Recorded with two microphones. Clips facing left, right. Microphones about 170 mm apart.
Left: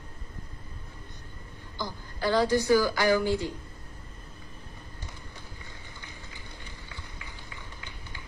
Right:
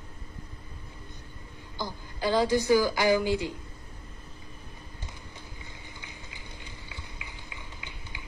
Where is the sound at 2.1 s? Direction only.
15° right (ahead or behind).